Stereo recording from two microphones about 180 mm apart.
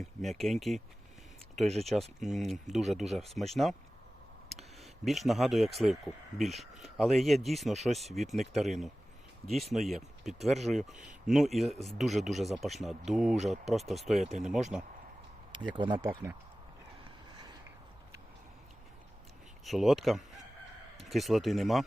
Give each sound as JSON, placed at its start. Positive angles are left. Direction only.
{"t": 0.0, "sound": "speech", "side_deg": 0}
{"t": 15.5, "sound": "speech", "side_deg": -25}
{"t": 19.6, "sound": "speech", "side_deg": 0}